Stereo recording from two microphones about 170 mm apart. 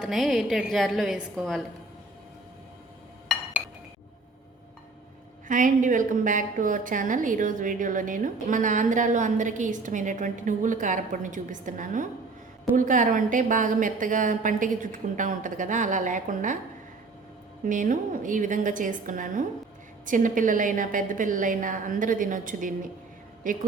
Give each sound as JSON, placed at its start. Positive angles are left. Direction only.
{"t": 0.0, "sound": "a woman's voice", "side_deg": 0}
{"t": 5.5, "sound": "a woman's voice", "side_deg": -50}
{"t": 17.7, "sound": "a woman's voice", "side_deg": -50}